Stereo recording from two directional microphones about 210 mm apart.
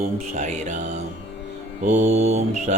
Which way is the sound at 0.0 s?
35° right (ahead or behind).